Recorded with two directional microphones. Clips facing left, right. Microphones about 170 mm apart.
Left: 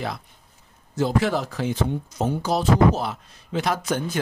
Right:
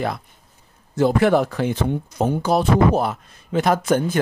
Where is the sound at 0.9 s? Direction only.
55° right (ahead or behind).